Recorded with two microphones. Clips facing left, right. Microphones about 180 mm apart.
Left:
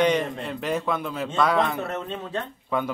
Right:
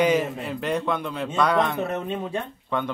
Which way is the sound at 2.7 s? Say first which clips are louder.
Left 1 dB; 5° left (ahead or behind).